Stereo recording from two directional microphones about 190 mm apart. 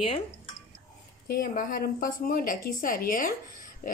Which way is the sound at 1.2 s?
50° left (ahead or behind).